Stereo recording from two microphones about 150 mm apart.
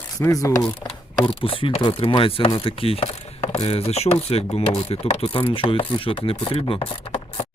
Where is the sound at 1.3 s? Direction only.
35° left (ahead or behind).